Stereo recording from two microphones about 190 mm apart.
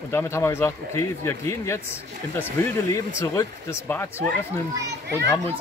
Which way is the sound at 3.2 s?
15° left (ahead or behind).